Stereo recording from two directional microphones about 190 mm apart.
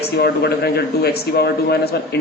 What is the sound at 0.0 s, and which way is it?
Speech, 60° left (ahead or behind).